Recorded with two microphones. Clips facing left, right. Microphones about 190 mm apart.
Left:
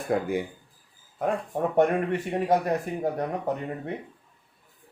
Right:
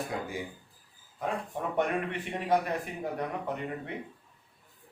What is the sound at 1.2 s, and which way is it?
Speech, 45° left (ahead or behind).